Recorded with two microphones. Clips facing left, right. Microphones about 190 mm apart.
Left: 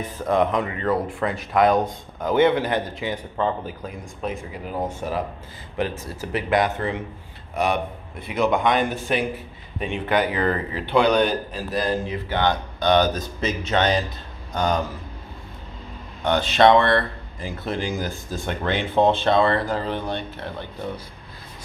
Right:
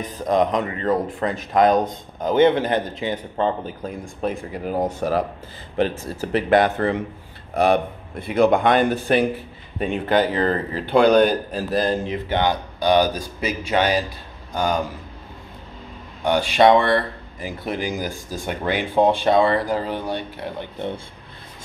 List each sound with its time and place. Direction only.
0.0 s speech: 15° right (ahead or behind)
0.6 s speech: 35° right (ahead or behind)
1.7 s a man's voice: 20° right (ahead or behind)
6.5 s speech: 60° right (ahead or behind)
7.5 s speech: 35° right (ahead or behind)
8.4 s speech: 60° right (ahead or behind)
8.7 s speech: 35° right (ahead or behind)
11.7 s a man's voice: 25° right (ahead or behind)
12.4 s a man's voice: 10° right (ahead or behind)
16.3 s speech: 10° right (ahead or behind)